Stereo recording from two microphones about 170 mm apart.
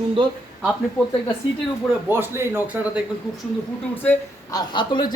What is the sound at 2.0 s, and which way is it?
Speech, 15° right (ahead or behind).